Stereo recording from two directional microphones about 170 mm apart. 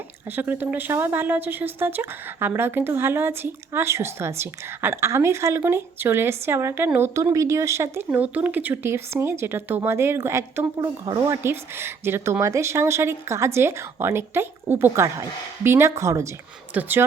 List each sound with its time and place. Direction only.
0.3 s speech: 10° right (ahead or behind)